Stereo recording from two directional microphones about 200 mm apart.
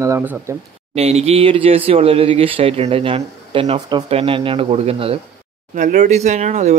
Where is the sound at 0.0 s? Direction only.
10° right (ahead or behind).